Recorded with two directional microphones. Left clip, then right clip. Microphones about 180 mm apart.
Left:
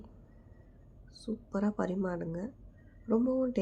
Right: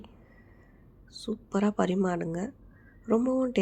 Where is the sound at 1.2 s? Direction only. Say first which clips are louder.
Right 6 dB; 25° right (ahead or behind).